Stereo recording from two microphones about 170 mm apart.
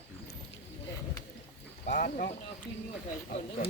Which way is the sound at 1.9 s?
50° left (ahead or behind).